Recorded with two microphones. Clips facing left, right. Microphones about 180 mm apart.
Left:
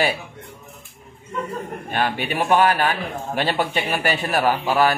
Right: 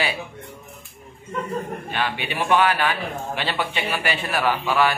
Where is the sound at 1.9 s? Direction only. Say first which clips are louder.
Left 8 dB; 45° left (ahead or behind).